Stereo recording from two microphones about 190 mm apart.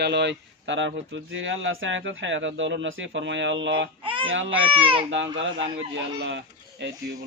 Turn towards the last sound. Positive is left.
turn(degrees=-65)  # may be behind; listen again after turning